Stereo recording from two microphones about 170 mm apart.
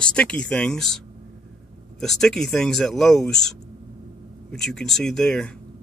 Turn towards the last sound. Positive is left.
turn(degrees=5)  # may be behind; listen again after turning